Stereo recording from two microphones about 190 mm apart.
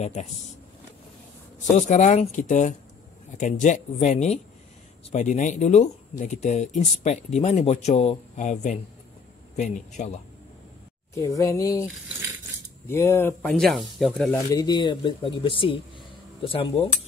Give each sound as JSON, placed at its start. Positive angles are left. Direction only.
{"t": 0.0, "sound": "speech", "side_deg": 35}
{"t": 1.6, "sound": "speech", "side_deg": 40}
{"t": 11.1, "sound": "speech", "side_deg": 15}
{"t": 12.8, "sound": "speech", "side_deg": 10}
{"t": 13.5, "sound": "speech", "side_deg": 0}
{"t": 14.5, "sound": "speech", "side_deg": 20}